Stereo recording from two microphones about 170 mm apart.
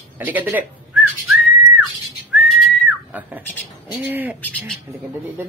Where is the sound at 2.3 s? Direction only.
Centre (ahead or behind).